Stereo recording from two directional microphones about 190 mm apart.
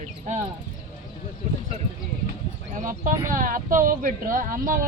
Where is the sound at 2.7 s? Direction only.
45° right (ahead or behind).